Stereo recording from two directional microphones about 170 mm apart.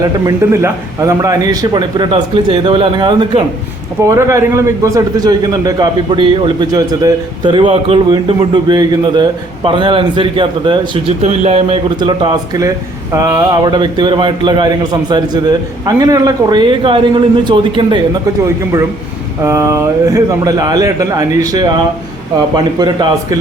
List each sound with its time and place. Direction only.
0.0 s a man's voice: 20° right (ahead or behind)